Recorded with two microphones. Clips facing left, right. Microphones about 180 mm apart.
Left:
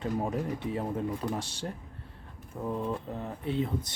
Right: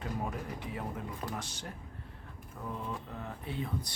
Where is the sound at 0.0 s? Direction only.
30° left (ahead or behind).